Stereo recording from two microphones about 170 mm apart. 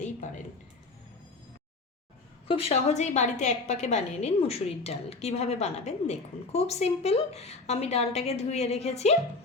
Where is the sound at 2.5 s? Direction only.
35° left (ahead or behind).